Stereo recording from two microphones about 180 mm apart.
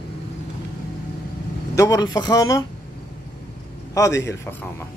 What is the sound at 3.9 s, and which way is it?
Speech, 20° left (ahead or behind).